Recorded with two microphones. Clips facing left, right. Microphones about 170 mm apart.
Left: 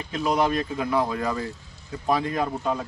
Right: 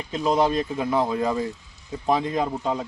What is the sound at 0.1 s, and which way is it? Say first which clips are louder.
A man's voice: right 2 dB; 25° right (ahead or behind).